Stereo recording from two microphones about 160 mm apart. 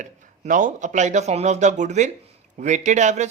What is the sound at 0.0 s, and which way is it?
Speech, 55° right (ahead or behind).